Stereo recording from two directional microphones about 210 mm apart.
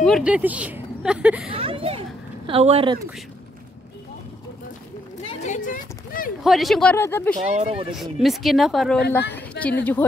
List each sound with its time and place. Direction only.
0.0 s a woman's voice: centre (ahead or behind)
1.5 s a sound: 25° right (ahead or behind)
2.4 s speech: 30° right (ahead or behind)
5.2 s a sound: 30° left (ahead or behind)
6.4 s a woman's voice: centre (ahead or behind)
7.5 s speech: 30° right (ahead or behind)
7.9 s a woman's voice: centre (ahead or behind)